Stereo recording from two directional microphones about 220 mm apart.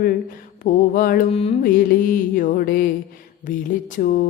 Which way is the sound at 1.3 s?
30° left (ahead or behind).